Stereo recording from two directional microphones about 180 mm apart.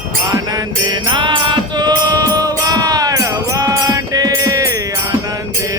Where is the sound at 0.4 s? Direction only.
20° right (ahead or behind).